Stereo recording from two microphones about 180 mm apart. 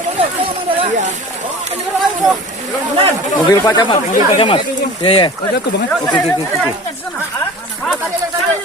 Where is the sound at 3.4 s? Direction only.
25° left (ahead or behind).